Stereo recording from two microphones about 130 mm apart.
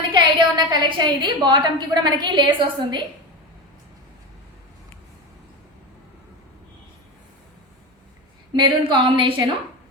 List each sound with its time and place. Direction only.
0.1 s a woman's voice: 40° right (ahead or behind)
8.5 s a woman's voice: 40° right (ahead or behind)